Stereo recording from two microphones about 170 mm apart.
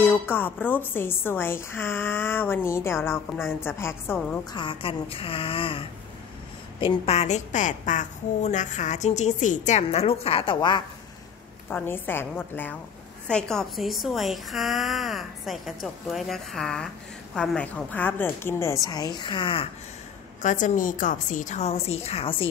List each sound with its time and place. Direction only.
0.0 s a woman's voice: 10° left (ahead or behind)
4.5 s a woman's voice: 30° left (ahead or behind)
11.7 s a woman's voice: 10° left (ahead or behind); by 19.7 s 30° left (ahead or behind)
20.4 s a woman's voice: 45° left (ahead or behind)